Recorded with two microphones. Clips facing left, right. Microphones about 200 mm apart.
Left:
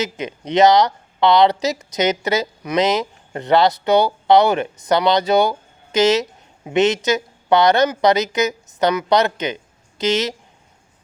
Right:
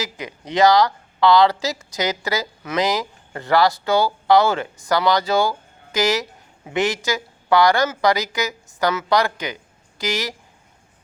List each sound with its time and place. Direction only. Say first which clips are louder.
0.0 s speech: left 5 dB; 20° left (ahead or behind)